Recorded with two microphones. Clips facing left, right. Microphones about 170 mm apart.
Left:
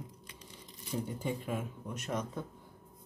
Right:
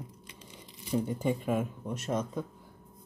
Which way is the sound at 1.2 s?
55° right (ahead or behind).